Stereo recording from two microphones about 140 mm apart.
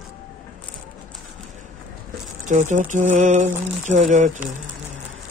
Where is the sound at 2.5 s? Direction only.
60° right (ahead or behind).